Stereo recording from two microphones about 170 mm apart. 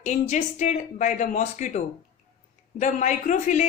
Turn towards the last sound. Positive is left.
turn(degrees=45)  # may be behind; listen again after turning